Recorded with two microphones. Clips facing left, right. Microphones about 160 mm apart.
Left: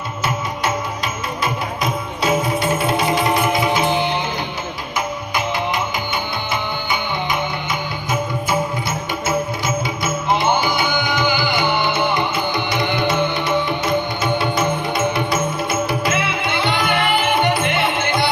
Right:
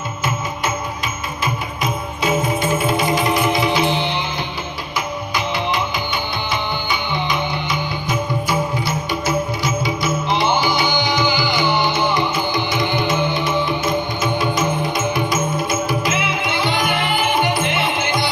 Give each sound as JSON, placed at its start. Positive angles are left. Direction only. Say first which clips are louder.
{"t": 9.8, "sound": "music", "louder": "right 1 dB", "side_deg": 55}